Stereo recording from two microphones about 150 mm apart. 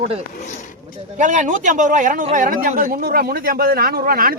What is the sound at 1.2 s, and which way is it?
Speech, 55° right (ahead or behind).